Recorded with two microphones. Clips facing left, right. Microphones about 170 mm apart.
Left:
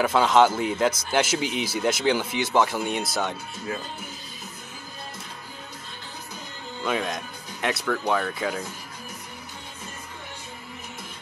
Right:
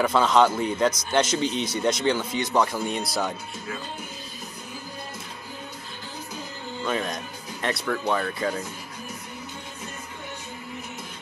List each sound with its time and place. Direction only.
0.0 s speech: 5° left (ahead or behind)
6.9 s speech: centre (ahead or behind)